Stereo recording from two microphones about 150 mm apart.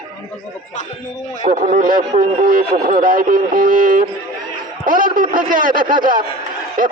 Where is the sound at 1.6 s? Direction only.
65° right (ahead or behind).